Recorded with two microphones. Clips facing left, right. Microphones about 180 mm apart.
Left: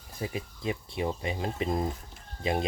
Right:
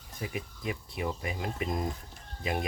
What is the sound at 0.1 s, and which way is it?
Speech, 30° left (ahead or behind).